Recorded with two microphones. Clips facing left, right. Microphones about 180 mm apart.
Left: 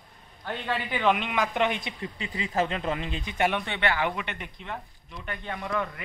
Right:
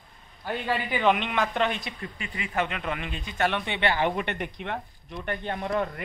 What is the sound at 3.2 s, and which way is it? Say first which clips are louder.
Speech: even; 15° left (ahead or behind).